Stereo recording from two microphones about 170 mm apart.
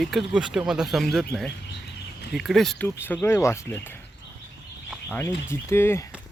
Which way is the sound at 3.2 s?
15° left (ahead or behind).